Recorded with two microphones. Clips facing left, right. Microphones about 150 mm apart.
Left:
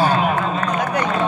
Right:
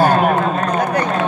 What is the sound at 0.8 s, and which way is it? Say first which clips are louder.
Run: right 3 dB; 35° right (ahead or behind).